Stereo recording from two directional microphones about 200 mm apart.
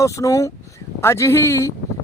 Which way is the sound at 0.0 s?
15° left (ahead or behind).